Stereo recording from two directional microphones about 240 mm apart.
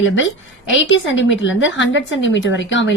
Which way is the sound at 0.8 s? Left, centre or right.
Left.